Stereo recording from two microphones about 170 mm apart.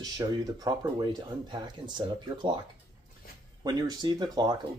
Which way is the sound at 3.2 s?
60° left (ahead or behind).